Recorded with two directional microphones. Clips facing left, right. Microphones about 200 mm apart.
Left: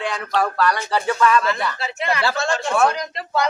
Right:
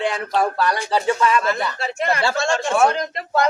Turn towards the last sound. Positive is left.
turn(degrees=-50)  # may be behind; listen again after turning